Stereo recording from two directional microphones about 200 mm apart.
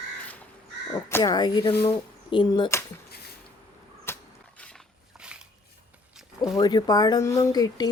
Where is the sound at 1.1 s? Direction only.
15° left (ahead or behind).